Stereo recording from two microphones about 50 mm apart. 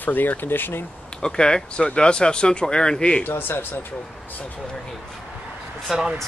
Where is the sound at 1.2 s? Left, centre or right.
Centre.